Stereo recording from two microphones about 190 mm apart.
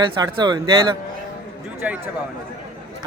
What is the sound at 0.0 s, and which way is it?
Speech, 25° right (ahead or behind).